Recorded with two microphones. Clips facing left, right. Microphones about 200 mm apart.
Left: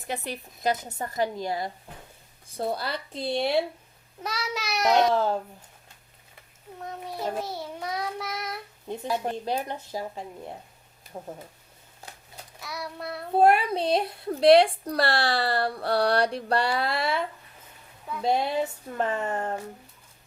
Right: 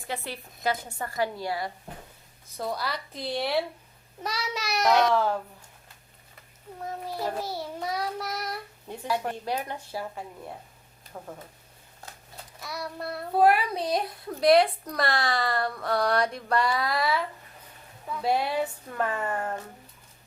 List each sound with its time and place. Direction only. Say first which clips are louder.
0.1 s speech: left 2 dB; 15° left (ahead or behind)
4.2 s child singing: even; centre (ahead or behind)
4.9 s speech: left 3 dB; 25° left (ahead or behind)
7.0 s child singing: left 1 dB; centre (ahead or behind)
9.0 s speech: left 1 dB; 20° left (ahead or behind)
12.5 s child singing: right 1 dB; centre (ahead or behind)
13.3 s speech: left 2 dB; 25° left (ahead or behind)